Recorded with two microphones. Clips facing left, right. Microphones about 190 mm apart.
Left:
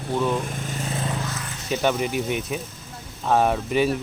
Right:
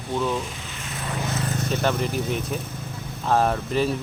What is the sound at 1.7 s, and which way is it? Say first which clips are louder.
Speech: left 3 dB; 5° left (ahead or behind).